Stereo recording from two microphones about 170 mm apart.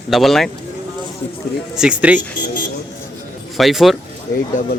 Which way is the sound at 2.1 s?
50° left (ahead or behind).